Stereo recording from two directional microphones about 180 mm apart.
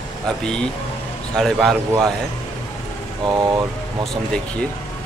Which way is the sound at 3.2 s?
25° right (ahead or behind).